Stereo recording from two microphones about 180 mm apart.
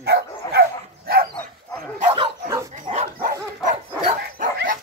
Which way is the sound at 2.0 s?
35° right (ahead or behind).